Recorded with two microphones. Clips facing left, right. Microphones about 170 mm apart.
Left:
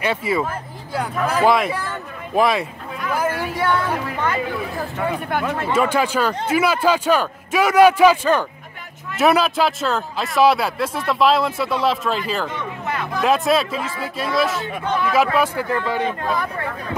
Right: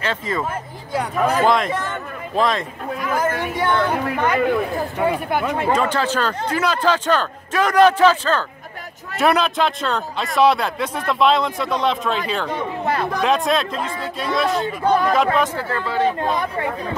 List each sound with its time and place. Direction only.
0.0 s a man's voice: 10° left (ahead or behind)
4.0 s speech: 55° right (ahead or behind)
4.9 s speech: 10° right (ahead or behind)
5.8 s a man's voice: 10° left (ahead or behind)
9.1 s speech: centre (ahead or behind)
12.5 s a sound: 35° right (ahead or behind)
13.2 s speech: 5° left (ahead or behind)
14.5 s speech: 40° right (ahead or behind)
15.3 s a man's voice: 10° left (ahead or behind)
16.2 s speech: 25° right (ahead or behind)